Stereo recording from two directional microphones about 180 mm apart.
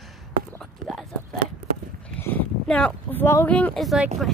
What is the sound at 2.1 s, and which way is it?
Speech, 10° left (ahead or behind).